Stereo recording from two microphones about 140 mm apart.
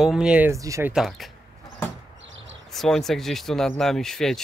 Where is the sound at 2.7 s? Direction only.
Centre (ahead or behind).